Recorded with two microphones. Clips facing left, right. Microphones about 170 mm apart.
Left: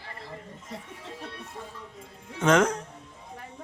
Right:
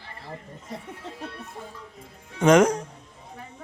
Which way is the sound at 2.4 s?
15° right (ahead or behind).